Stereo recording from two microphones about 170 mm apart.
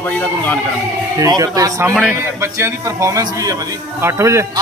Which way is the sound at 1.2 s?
20° right (ahead or behind).